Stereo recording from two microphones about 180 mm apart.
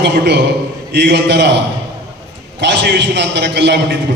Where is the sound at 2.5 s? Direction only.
70° right (ahead or behind).